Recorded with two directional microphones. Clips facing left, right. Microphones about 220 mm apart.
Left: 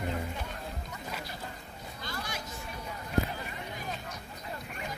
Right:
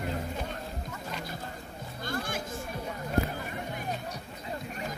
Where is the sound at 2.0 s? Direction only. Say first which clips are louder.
Right 6 dB; 50° right (ahead or behind).